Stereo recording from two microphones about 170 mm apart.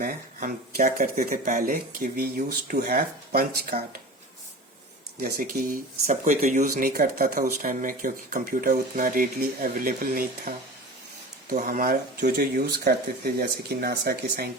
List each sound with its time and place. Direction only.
0.0 s speech: 55° right (ahead or behind)
5.2 s speech: 60° right (ahead or behind)